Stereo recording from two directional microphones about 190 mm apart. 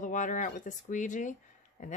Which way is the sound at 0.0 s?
45° left (ahead or behind).